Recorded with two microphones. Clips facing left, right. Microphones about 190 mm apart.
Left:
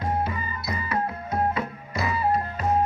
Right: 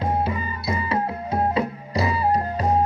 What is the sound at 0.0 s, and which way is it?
Music, 25° right (ahead or behind).